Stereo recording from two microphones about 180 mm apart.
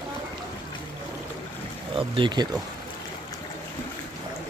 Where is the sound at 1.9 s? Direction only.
30° right (ahead or behind).